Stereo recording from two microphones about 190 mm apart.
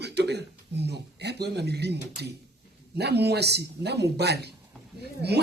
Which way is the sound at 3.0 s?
60° right (ahead or behind).